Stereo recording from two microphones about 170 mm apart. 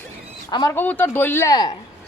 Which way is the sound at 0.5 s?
25° left (ahead or behind).